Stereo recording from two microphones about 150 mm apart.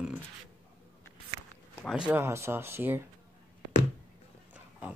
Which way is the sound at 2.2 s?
15° right (ahead or behind).